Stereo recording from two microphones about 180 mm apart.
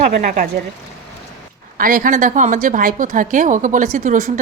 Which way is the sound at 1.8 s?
50° right (ahead or behind).